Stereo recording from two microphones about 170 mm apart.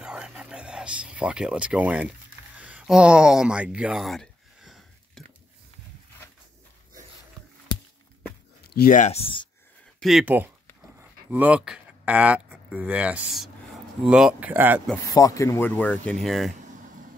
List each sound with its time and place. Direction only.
0.0 s a sound: 5° right (ahead or behind)
8.7 s speech: 55° left (ahead or behind); by 9.5 s 30° left (ahead or behind)
9.9 s speech: centre (ahead or behind)
15.1 s speech: 20° left (ahead or behind); by 16.5 s centre (ahead or behind)